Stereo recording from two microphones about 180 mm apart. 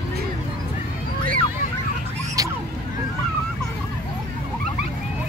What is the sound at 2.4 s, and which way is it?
Fowl, 20° right (ahead or behind).